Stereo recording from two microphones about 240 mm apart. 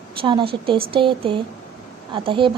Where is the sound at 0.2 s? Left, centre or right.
Right.